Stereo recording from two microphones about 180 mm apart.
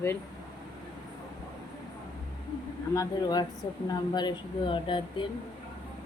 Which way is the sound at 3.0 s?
20° left (ahead or behind).